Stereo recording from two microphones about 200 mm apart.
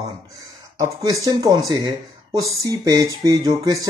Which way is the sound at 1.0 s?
20° right (ahead or behind).